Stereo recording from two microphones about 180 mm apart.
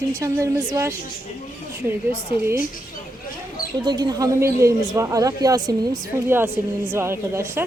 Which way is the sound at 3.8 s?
25° right (ahead or behind).